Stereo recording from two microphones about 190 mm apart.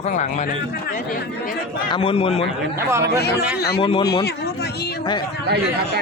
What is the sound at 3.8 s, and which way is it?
Speech, 25° left (ahead or behind).